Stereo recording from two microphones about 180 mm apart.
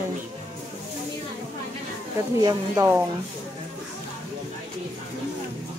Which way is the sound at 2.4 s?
15° right (ahead or behind).